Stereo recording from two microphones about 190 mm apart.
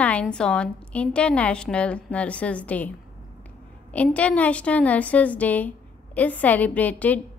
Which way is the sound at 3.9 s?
5° left (ahead or behind).